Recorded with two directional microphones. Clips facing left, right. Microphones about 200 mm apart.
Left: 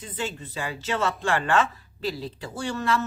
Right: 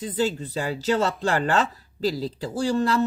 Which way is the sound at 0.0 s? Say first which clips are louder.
Right 8 dB; 35° right (ahead or behind).